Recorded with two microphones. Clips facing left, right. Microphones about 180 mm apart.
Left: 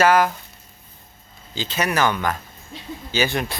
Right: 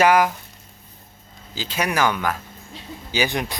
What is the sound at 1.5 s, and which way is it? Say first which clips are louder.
Speech: left 1 dB; 10° right (ahead or behind).